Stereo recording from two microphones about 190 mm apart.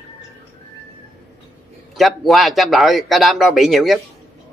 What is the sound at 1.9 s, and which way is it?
A man's voice, centre (ahead or behind).